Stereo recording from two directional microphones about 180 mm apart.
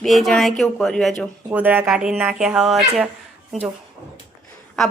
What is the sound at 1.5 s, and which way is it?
Speech, 10° right (ahead or behind).